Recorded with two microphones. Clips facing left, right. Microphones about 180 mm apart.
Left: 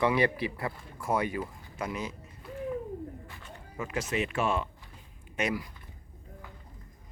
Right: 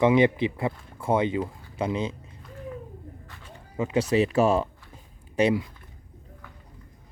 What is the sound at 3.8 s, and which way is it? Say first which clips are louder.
Speech: right 9 dB; 30° right (ahead or behind).